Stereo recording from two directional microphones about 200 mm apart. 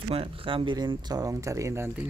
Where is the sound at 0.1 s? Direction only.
25° right (ahead or behind).